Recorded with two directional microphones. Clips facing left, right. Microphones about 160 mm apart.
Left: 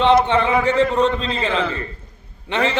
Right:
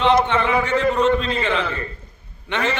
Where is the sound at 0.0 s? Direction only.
30° left (ahead or behind).